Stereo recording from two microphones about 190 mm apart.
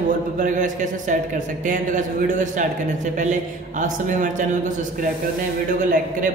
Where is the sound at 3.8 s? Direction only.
40° right (ahead or behind).